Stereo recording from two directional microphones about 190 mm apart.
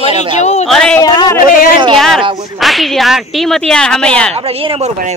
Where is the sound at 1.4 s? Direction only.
45° left (ahead or behind).